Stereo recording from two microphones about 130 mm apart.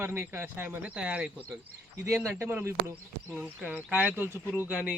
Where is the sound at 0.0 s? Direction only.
20° right (ahead or behind).